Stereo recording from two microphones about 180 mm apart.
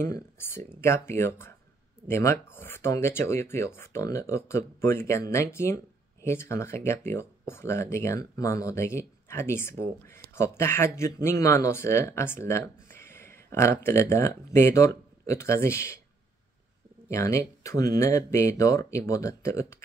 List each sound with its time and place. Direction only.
0.0 s speech: 15° left (ahead or behind)
17.1 s speech: 15° left (ahead or behind)